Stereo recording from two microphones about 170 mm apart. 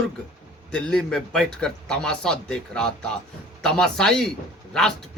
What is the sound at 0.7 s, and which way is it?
A man's voice, 5° left (ahead or behind).